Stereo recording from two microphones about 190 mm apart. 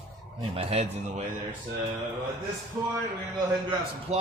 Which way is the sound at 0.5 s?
35° right (ahead or behind).